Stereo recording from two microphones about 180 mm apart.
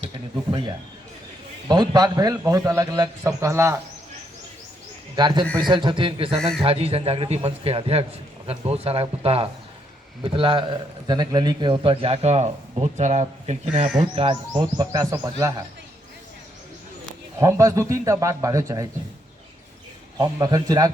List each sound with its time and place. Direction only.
1.6 s a man's voice: 20° right (ahead or behind)
5.1 s a man's voice: 25° right (ahead or behind); by 13.6 s 40° right (ahead or behind)
14.2 s a man's voice: 25° right (ahead or behind)
17.4 s speech: 15° right (ahead or behind)
20.1 s a man's voice: 20° right (ahead or behind)